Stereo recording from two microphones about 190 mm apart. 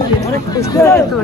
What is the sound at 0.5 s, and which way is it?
Speech, 20° left (ahead or behind).